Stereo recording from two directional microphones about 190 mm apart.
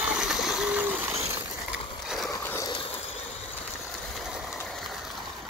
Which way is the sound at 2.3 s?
15° left (ahead or behind).